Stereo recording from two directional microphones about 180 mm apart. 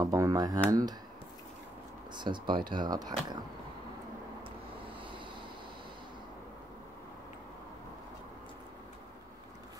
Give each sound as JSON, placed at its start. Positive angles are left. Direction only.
{"t": 0.0, "sound": "speech", "side_deg": -20}
{"t": 2.1, "sound": "speech", "side_deg": -25}